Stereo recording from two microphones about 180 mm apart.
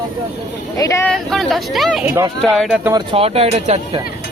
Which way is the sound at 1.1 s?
Centre (ahead or behind).